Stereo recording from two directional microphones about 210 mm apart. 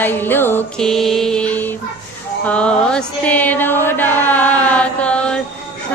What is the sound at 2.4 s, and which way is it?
Music, 5° left (ahead or behind).